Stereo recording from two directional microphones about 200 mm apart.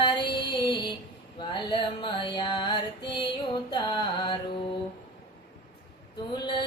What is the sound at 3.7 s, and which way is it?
Carnatic music, 20° left (ahead or behind).